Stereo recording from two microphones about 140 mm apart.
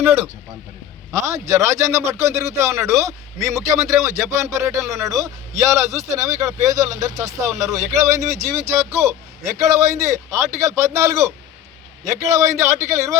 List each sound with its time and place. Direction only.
0.0 s a man's voice: 15° right (ahead or behind)
12.3 s a man's voice: 20° right (ahead or behind)